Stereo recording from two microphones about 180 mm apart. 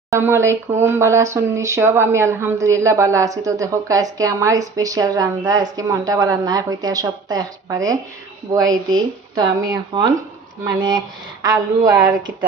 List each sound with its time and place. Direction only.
0.1 s speech: 15° right (ahead or behind)